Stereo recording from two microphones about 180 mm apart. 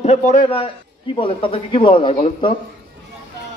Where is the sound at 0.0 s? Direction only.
40° left (ahead or behind).